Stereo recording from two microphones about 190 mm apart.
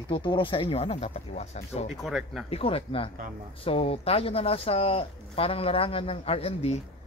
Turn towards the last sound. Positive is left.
turn(degrees=30)  # may be behind; listen again after turning